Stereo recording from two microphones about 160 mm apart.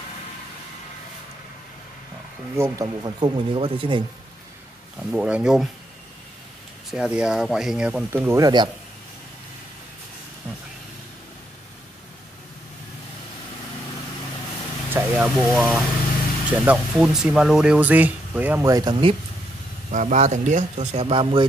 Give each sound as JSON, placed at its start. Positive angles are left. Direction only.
{"t": 2.5, "sound": "speech", "side_deg": -20}
{"t": 5.1, "sound": "speech", "side_deg": -5}
{"t": 6.9, "sound": "speech", "side_deg": -5}
{"t": 14.9, "sound": "vehicle", "side_deg": -15}
{"t": 15.2, "sound": "speech", "side_deg": -5}
{"t": 18.7, "sound": "speech", "side_deg": -25}
{"t": 19.9, "sound": "speech", "side_deg": -50}